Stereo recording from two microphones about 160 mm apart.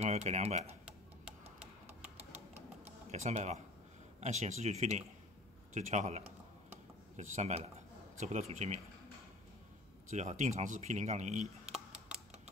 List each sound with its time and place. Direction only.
0.0 s speech: 45° right (ahead or behind)
2.3 s typing: 45° right (ahead or behind)
4.2 s speech: 45° right (ahead or behind)
6.7 s a sound: 45° right (ahead or behind)
8.2 s speech: 45° right (ahead or behind)
10.0 s speech: 45° right (ahead or behind)